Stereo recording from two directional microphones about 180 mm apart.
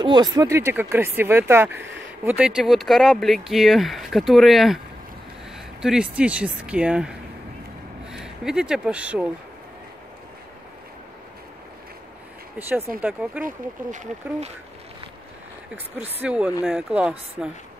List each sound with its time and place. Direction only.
0.0 s speech: 25° right (ahead or behind)
1.8 s speech: 90° right
2.2 s speech: 5° right (ahead or behind)
5.8 s speech: 5° right (ahead or behind)
12.5 s speech: 10° right (ahead or behind)
13.4 s speech: 45° right (ahead or behind)
16.0 s speech: 10° right (ahead or behind)